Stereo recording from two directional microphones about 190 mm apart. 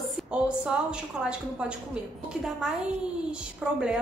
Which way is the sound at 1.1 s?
5° right (ahead or behind).